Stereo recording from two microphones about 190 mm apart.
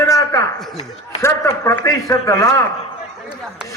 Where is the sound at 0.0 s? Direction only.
15° left (ahead or behind).